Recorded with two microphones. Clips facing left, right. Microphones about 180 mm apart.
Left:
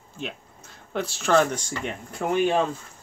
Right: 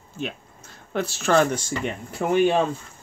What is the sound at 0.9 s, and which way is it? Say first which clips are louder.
Speech: right 1 dB; centre (ahead or behind).